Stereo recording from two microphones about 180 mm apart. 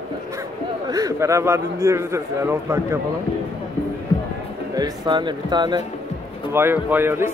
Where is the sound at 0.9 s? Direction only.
20° right (ahead or behind).